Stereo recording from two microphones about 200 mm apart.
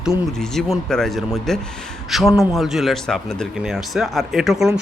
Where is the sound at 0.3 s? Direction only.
Centre (ahead or behind).